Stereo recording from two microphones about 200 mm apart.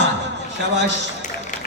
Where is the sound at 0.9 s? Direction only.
35° left (ahead or behind).